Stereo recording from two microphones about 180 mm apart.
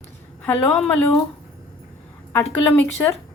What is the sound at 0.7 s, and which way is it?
Speech, centre (ahead or behind).